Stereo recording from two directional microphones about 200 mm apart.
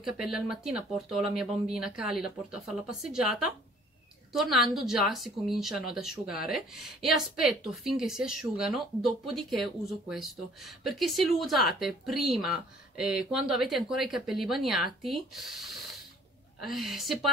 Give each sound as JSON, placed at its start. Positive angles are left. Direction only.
{"t": 0.0, "sound": "speech", "side_deg": -5}